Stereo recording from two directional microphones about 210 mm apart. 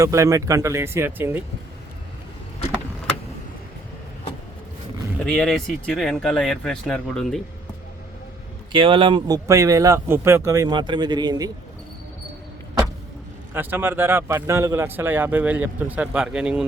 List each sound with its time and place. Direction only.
0.0 s a man's voice: 15° right (ahead or behind)
5.2 s speech: centre (ahead or behind)
8.7 s a man's voice: 25° right (ahead or behind)
13.5 s a man's voice: 10° right (ahead or behind)